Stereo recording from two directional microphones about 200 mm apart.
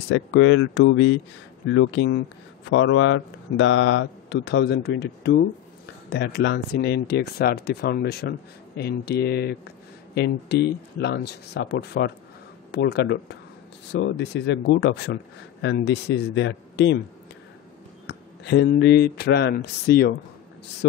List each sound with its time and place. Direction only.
0.3 s speech: 80° left
2.7 s speech: 90° left; by 17.0 s 60° left (ahead or behind)
18.0 s speech: 60° left (ahead or behind)